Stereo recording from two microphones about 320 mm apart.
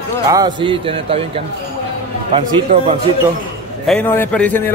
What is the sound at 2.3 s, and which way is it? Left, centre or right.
Speech, centre.